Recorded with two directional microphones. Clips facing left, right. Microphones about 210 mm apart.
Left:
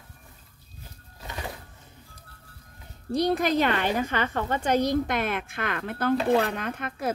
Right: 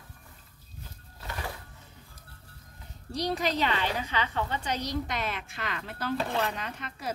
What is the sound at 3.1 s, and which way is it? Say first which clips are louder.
A woman's voice: left 6 dB; 55° left (ahead or behind).